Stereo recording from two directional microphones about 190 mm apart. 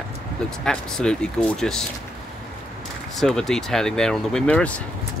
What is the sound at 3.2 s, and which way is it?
Speech, centre (ahead or behind).